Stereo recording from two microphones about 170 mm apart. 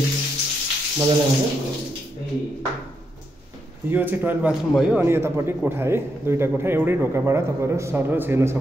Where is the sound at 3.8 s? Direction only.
10° right (ahead or behind).